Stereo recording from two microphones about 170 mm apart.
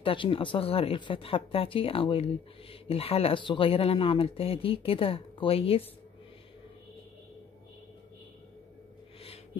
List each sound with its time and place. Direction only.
0.0 s speech: 30° left (ahead or behind)